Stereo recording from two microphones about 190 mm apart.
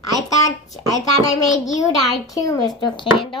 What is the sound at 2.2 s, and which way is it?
A child's voice, 20° left (ahead or behind).